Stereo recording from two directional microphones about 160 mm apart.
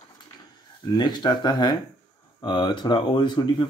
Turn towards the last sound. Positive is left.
turn(degrees=30)  # may be behind; listen again after turning